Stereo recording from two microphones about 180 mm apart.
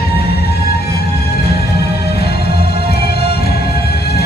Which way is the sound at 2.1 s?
60° left (ahead or behind).